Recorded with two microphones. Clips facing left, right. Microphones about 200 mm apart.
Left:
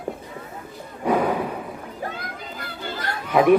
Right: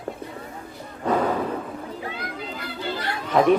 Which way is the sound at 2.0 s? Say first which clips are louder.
Even; 45° left (ahead or behind).